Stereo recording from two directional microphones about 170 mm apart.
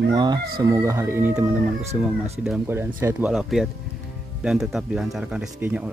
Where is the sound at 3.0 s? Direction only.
10° right (ahead or behind).